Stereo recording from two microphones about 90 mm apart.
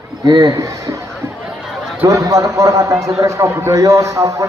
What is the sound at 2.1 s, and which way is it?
A man's voice, 40° right (ahead or behind).